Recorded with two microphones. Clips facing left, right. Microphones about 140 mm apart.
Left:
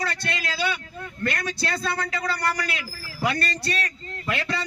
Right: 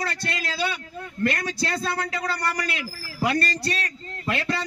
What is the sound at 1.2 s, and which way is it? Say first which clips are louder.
Speech: right 3 dB; 30° right (ahead or behind).